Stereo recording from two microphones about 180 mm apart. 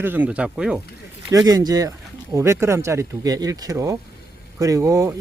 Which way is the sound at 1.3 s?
20° right (ahead or behind).